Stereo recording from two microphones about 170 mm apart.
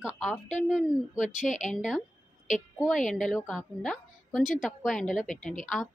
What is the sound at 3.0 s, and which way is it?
Speech, 50° left (ahead or behind).